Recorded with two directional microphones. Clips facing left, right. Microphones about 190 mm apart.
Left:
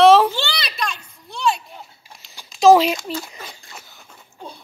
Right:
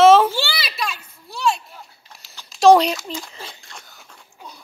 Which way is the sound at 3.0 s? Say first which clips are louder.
Left 3 dB; centre (ahead or behind).